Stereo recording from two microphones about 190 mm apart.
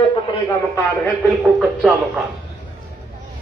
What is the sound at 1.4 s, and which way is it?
Speech, centre (ahead or behind).